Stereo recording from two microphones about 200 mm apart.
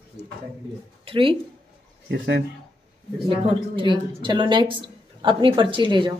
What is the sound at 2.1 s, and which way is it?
Speech, 60° right (ahead or behind).